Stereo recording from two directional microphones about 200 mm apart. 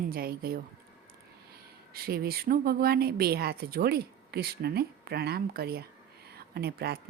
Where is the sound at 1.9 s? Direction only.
50° right (ahead or behind).